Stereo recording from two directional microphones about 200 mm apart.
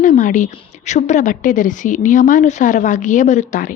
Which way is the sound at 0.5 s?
35° left (ahead or behind).